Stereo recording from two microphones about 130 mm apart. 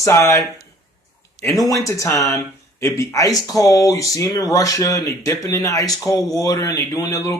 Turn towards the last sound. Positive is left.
turn(degrees=25)  # may be behind; listen again after turning